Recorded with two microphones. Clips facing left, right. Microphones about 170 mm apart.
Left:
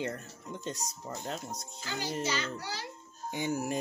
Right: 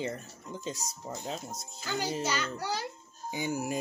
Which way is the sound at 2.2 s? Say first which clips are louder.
Right 1 dB; 45° right (ahead or behind).